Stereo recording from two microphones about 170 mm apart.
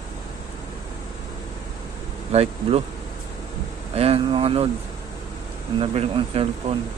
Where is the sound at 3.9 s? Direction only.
35° right (ahead or behind).